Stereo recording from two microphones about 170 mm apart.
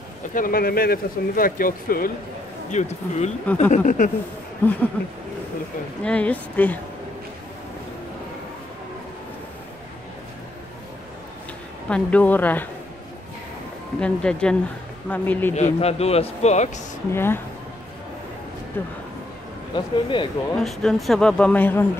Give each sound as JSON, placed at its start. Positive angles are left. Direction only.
{"t": 0.3, "sound": "speech", "side_deg": 55}
{"t": 2.7, "sound": "speech", "side_deg": 45}
{"t": 4.6, "sound": "speech", "side_deg": 10}
{"t": 6.0, "sound": "speech", "side_deg": 10}
{"t": 11.9, "sound": "speech", "side_deg": 10}
{"t": 13.9, "sound": "speech", "side_deg": 5}
{"t": 15.5, "sound": "a man's voice", "side_deg": 40}
{"t": 17.1, "sound": "speech", "side_deg": 15}
{"t": 18.8, "sound": "speech", "side_deg": 10}
{"t": 19.7, "sound": "speech", "side_deg": 30}
{"t": 20.5, "sound": "speech", "side_deg": 0}